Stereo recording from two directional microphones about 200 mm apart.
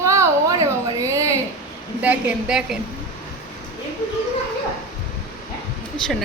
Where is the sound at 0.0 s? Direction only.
15° right (ahead or behind).